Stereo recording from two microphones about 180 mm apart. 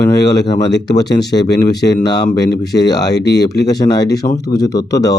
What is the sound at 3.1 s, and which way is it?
Speech, 70° left (ahead or behind).